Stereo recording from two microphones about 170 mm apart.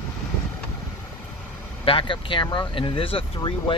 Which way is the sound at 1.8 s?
30° left (ahead or behind).